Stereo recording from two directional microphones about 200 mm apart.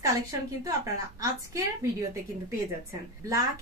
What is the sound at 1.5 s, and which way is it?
Speech, 15° right (ahead or behind).